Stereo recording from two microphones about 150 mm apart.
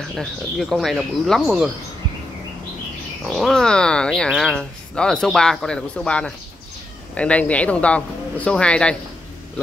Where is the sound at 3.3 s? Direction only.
Centre (ahead or behind).